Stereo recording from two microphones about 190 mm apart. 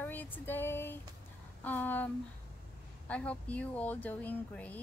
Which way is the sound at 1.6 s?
10° left (ahead or behind).